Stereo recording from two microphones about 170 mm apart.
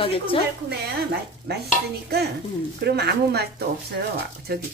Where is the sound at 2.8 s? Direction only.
75° right (ahead or behind).